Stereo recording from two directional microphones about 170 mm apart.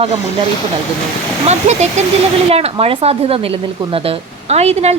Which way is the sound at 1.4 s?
40° right (ahead or behind).